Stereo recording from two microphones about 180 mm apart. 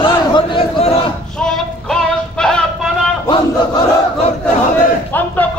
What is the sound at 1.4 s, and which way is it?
Synthetic singing, 5° left (ahead or behind).